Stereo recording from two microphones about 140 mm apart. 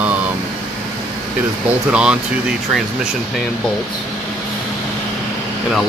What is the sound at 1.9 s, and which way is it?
Speech, 5° right (ahead or behind).